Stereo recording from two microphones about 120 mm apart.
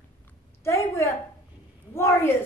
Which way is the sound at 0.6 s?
25° left (ahead or behind).